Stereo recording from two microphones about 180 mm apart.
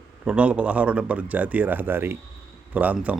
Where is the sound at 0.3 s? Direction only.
5° right (ahead or behind).